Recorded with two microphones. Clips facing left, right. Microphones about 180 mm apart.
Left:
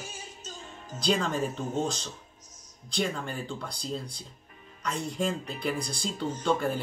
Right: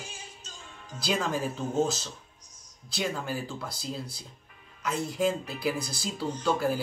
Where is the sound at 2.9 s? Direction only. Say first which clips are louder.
Even; 5° right (ahead or behind).